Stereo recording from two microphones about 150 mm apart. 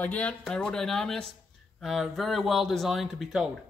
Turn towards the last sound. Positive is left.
turn(degrees=0)  # may be behind; listen again after turning